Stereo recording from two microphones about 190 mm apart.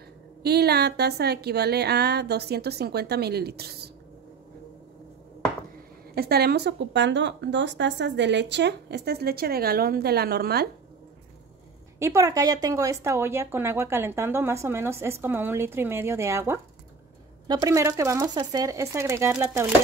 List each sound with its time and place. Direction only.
0.4 s speech: 60° right (ahead or behind)
6.1 s speech: 55° right (ahead or behind)
12.0 s speech: 15° right (ahead or behind)